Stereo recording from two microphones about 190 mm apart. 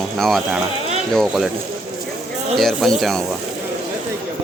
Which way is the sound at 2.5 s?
Centre (ahead or behind).